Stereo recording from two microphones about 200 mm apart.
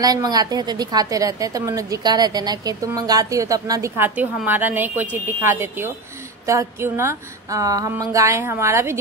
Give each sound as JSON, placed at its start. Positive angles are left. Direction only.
{"t": 0.0, "sound": "a woman's voice", "side_deg": -20}